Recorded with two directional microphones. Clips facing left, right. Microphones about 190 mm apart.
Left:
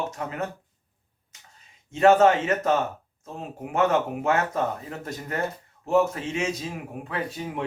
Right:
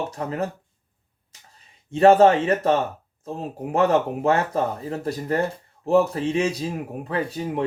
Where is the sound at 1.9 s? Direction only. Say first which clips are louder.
Right 3 dB; 35° right (ahead or behind).